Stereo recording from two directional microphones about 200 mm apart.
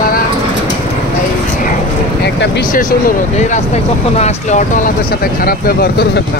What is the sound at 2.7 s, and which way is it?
Speech, 40° left (ahead or behind).